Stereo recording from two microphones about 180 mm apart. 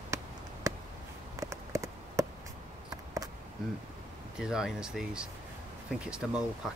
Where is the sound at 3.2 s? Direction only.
20° right (ahead or behind).